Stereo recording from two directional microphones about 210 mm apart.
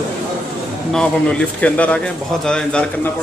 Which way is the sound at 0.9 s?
5° left (ahead or behind).